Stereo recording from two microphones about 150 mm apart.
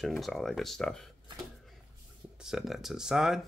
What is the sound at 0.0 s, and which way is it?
Speech, centre (ahead or behind).